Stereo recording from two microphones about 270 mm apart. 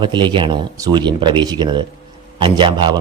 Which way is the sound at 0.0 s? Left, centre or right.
Centre.